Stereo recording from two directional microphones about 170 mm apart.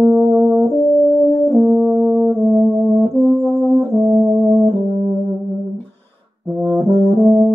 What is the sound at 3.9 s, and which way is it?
Brass instrument, 20° right (ahead or behind).